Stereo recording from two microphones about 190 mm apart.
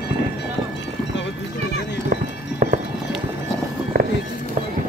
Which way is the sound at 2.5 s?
40° right (ahead or behind).